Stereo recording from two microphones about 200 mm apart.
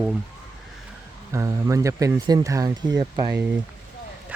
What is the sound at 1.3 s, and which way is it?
Speech, 15° right (ahead or behind).